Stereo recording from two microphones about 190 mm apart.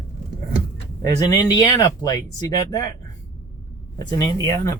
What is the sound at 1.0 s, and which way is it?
Speech, 15° left (ahead or behind).